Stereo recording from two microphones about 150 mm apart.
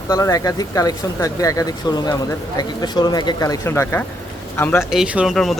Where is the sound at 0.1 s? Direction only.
25° left (ahead or behind).